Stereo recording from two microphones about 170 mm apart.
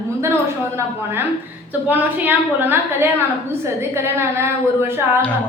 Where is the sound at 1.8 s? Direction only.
10° right (ahead or behind).